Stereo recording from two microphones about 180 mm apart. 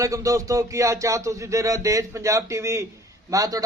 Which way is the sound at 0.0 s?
15° right (ahead or behind).